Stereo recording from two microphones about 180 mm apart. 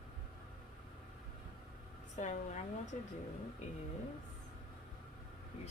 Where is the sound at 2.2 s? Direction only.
45° left (ahead or behind).